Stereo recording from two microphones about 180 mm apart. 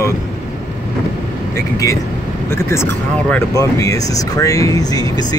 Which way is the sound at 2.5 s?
15° left (ahead or behind).